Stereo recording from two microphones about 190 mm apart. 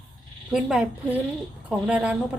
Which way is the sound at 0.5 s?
5° right (ahead or behind).